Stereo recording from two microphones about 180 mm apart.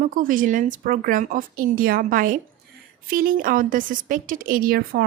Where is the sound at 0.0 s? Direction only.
50° right (ahead or behind).